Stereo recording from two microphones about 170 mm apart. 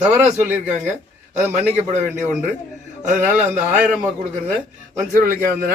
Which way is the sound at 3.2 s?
10° right (ahead or behind).